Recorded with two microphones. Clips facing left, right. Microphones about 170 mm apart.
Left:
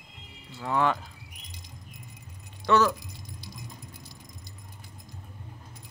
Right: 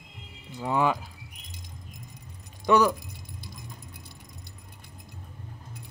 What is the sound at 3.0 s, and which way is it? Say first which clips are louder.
Keys jangling: right 1 dB; 55° right (ahead or behind).